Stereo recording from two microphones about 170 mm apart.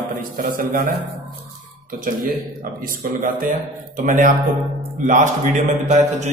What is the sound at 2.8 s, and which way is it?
A man's voice, 50° right (ahead or behind).